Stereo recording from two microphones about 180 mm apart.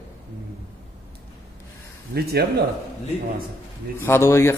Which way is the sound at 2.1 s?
60° right (ahead or behind).